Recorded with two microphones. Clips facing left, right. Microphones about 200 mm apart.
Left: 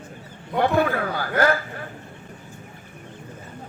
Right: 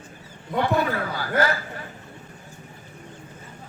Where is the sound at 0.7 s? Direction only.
55° left (ahead or behind).